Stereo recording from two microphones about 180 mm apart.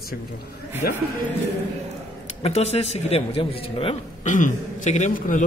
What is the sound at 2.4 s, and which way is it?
Speech, 35° left (ahead or behind).